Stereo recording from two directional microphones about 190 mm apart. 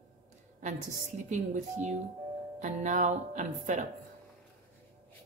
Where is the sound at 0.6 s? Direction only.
40° right (ahead or behind).